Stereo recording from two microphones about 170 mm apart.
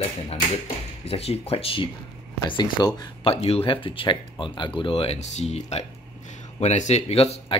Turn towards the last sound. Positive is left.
turn(degrees=35)  # may be behind; listen again after turning